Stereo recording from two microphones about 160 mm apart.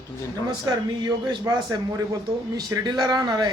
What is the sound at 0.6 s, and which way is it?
Speech, 25° right (ahead or behind).